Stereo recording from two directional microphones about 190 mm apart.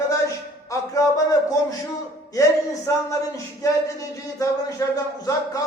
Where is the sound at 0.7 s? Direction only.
15° left (ahead or behind).